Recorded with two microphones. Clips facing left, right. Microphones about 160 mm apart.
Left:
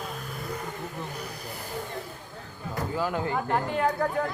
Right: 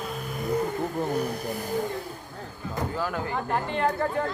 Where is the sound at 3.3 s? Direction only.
5° left (ahead or behind).